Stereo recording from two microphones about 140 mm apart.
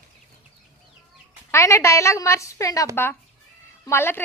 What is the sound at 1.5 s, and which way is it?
A woman's voice, 20° left (ahead or behind).